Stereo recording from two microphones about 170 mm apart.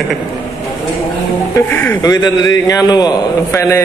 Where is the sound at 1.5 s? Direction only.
10° left (ahead or behind).